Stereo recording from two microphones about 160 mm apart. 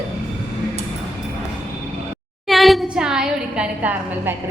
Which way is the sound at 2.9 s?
5° right (ahead or behind).